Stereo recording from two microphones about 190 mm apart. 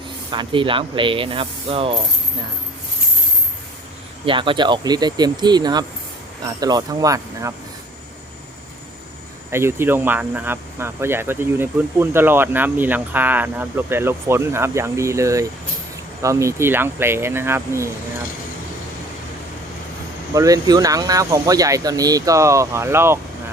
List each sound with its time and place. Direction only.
0.3 s ratchet: 25° right (ahead or behind)
4.3 s ratchet: 25° right (ahead or behind)
9.5 s speech: 15° right (ahead or behind)
20.3 s speech: 20° right (ahead or behind)